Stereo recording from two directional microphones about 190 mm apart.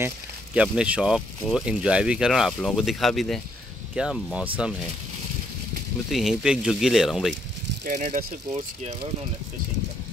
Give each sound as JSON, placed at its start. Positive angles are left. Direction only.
{"t": 0.6, "sound": "speech", "side_deg": -5}
{"t": 6.0, "sound": "speech", "side_deg": 0}
{"t": 7.8, "sound": "speech", "side_deg": -40}
{"t": 8.5, "sound": "speech", "side_deg": -30}